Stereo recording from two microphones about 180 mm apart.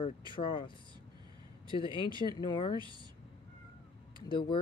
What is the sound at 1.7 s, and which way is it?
Speech, 30° left (ahead or behind).